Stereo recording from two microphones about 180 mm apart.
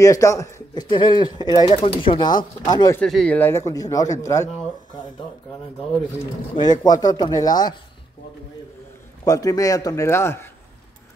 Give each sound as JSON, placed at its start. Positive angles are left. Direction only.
{"t": 0.0, "sound": "speech", "side_deg": 15}
{"t": 3.0, "sound": "a man's voice", "side_deg": 5}
{"t": 6.5, "sound": "speech", "side_deg": 25}
{"t": 9.2, "sound": "speech", "side_deg": 20}